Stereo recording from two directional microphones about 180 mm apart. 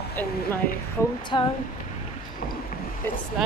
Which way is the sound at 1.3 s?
25° left (ahead or behind).